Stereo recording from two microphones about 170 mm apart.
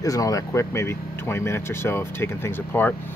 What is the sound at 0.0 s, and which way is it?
Speech, 20° left (ahead or behind).